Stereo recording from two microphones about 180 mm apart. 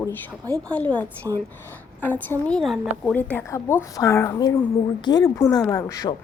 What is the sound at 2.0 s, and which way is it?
A woman's voice, 10° left (ahead or behind).